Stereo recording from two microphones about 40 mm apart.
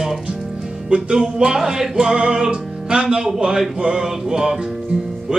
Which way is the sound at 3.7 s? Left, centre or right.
Right.